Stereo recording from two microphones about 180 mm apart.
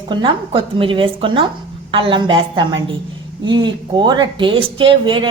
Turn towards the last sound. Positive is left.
turn(degrees=-30)  # may be behind; listen again after turning